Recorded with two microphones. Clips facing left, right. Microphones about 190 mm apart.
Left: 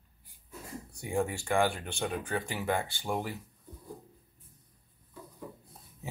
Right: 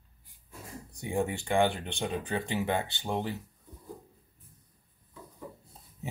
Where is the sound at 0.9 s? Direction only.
20° right (ahead or behind).